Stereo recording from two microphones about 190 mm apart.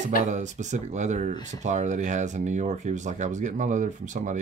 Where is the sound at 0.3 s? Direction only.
40° right (ahead or behind).